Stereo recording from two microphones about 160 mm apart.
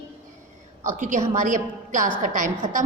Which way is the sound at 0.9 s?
50° right (ahead or behind).